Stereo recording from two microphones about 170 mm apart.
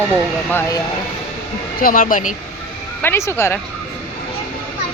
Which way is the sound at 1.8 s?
55° left (ahead or behind).